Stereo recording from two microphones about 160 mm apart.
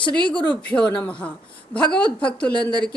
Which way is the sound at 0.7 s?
10° left (ahead or behind).